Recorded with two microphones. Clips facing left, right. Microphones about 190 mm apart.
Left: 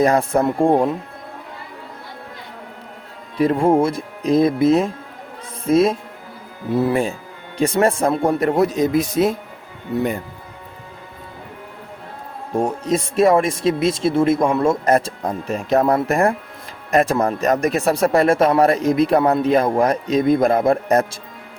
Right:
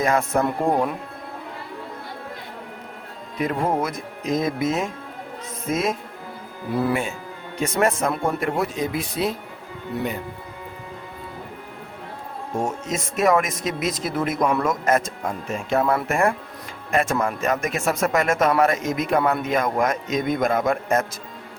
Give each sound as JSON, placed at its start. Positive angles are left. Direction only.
{"t": 0.0, "sound": "speech", "side_deg": 35}
{"t": 3.3, "sound": "speech", "side_deg": 30}
{"t": 12.5, "sound": "speech", "side_deg": 35}